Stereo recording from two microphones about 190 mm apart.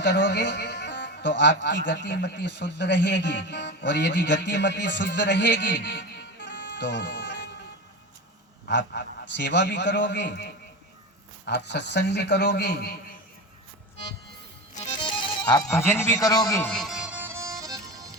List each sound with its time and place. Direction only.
0.0 s a man's voice: 65° left (ahead or behind)
5.9 s music: 65° left (ahead or behind)
8.6 s a man's voice: 60° left (ahead or behind)
11.4 s speech: 60° left (ahead or behind)
15.0 s music: 25° left (ahead or behind)
15.9 s a man's voice: 15° left (ahead or behind)
16.6 s music: centre (ahead or behind); by 17.7 s 15° right (ahead or behind)